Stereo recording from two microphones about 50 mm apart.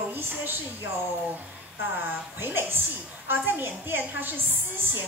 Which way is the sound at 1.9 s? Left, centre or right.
Right.